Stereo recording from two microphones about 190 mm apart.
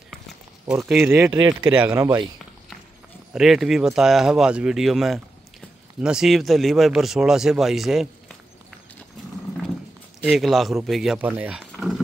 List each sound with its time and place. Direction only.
0.1 s a sound: centre (ahead or behind)
0.8 s speech: 5° right (ahead or behind)
1.3 s speech: 20° right (ahead or behind)
1.8 s speech: 10° right (ahead or behind)
3.3 s speech: centre (ahead or behind)
10.2 s speech: centre (ahead or behind)
11.6 s a sound: centre (ahead or behind)